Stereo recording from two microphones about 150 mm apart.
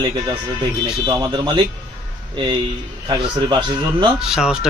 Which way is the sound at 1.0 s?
30° right (ahead or behind).